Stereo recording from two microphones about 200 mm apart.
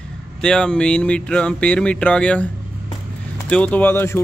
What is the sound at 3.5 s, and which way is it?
Speech, 5° left (ahead or behind).